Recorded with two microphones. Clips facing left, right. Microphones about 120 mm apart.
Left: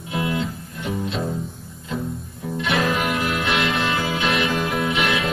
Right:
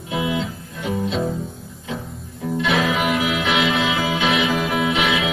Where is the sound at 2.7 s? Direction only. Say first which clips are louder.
Right 1 dB; centre (ahead or behind).